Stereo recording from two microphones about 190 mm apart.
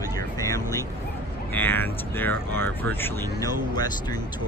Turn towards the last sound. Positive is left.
turn(degrees=20)  # may be behind; listen again after turning